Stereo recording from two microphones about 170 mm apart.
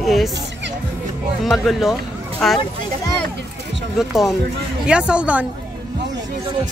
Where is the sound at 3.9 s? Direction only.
Centre (ahead or behind).